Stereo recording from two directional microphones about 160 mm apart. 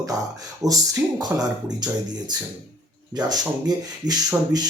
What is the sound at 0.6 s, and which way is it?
Speech, 20° right (ahead or behind).